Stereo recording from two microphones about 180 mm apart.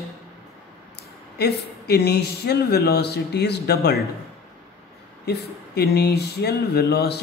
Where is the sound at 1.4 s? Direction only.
65° left (ahead or behind).